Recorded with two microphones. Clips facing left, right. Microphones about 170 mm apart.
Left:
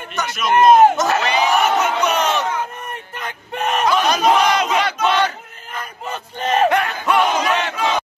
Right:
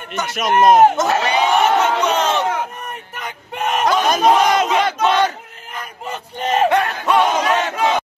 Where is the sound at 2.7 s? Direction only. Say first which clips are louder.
Even; 5° right (ahead or behind).